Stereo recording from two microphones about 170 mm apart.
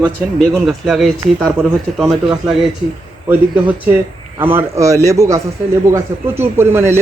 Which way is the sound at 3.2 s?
10° right (ahead or behind).